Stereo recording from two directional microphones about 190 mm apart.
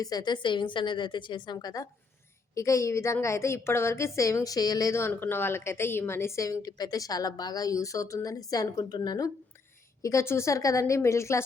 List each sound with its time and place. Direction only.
0.0 s a woman's voice: 20° left (ahead or behind)